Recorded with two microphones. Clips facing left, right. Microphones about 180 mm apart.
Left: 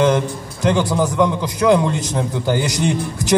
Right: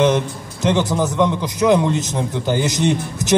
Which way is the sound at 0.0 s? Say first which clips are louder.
Even; 20° right (ahead or behind).